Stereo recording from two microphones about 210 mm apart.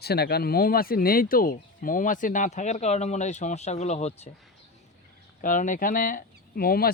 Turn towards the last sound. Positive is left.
turn(degrees=45)  # may be behind; listen again after turning